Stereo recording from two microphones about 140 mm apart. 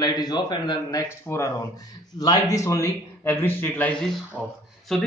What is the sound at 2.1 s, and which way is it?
A man's voice, 25° left (ahead or behind).